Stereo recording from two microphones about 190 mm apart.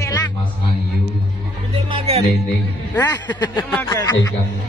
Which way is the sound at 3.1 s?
20° left (ahead or behind).